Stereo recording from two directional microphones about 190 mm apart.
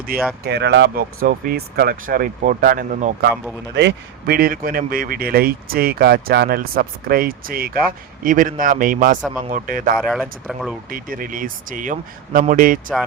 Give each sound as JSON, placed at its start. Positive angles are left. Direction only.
{"t": 0.1, "sound": "speech", "side_deg": -50}
{"t": 3.8, "sound": "speech", "side_deg": -55}
{"t": 10.0, "sound": "speech", "side_deg": 0}
{"t": 10.8, "sound": "speech", "side_deg": -50}